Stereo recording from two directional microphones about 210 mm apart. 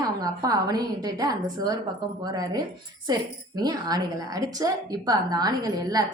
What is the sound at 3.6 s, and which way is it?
A woman's voice, 20° right (ahead or behind).